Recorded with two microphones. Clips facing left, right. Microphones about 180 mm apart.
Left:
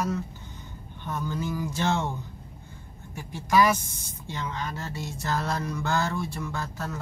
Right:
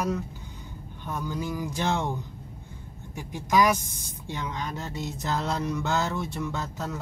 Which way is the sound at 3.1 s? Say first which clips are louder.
Left 1 dB; 15° right (ahead or behind).